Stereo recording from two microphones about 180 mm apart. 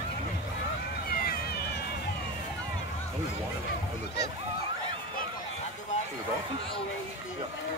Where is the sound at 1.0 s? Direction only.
55° left (ahead or behind).